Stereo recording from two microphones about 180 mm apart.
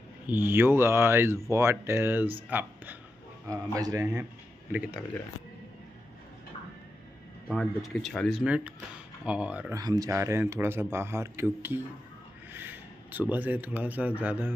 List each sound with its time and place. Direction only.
0.3 s speech: 10° right (ahead or behind)
7.4 s speech: centre (ahead or behind)
9.8 s speech: 20° right (ahead or behind)